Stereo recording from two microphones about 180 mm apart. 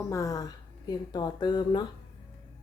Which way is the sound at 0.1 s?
20° left (ahead or behind).